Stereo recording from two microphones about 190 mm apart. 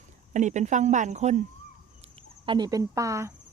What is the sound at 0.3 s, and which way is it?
Speech, 40° right (ahead or behind).